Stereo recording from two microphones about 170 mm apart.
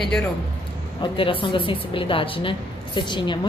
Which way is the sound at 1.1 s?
30° left (ahead or behind).